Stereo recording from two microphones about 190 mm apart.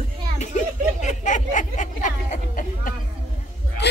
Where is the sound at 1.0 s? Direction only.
40° left (ahead or behind).